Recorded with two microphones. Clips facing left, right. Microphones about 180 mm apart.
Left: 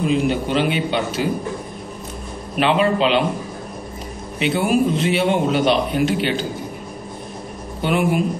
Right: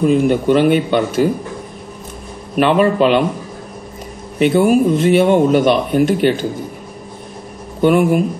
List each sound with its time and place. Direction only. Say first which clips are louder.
0.0 s speech: right 6 dB; 50° right (ahead or behind)
2.5 s speech: right 4 dB; 50° right (ahead or behind)
4.4 s speech: right 6 dB; 50° right (ahead or behind)
7.8 s speech: right 7 dB; 50° right (ahead or behind)